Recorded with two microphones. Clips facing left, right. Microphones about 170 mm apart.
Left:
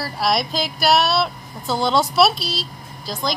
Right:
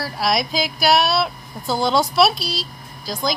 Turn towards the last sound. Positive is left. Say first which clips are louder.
# right 1 dB
turn(degrees=0)  # may be behind; listen again after turning